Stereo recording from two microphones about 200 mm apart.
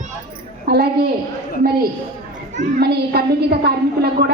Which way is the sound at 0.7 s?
50° right (ahead or behind).